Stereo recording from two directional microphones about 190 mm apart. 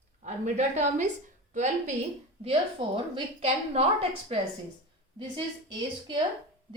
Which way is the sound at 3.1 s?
30° right (ahead or behind).